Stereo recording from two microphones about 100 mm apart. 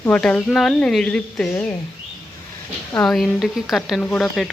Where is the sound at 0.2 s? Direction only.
10° left (ahead or behind).